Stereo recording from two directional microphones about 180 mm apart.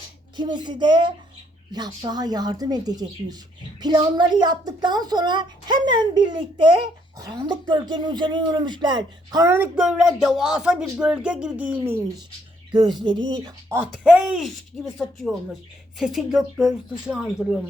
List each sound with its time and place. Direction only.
0.3 s speech: 25° right (ahead or behind); by 11.8 s 10° right (ahead or behind)
13.0 s speech: 25° right (ahead or behind)
13.7 s a woman's voice: 5° right (ahead or behind)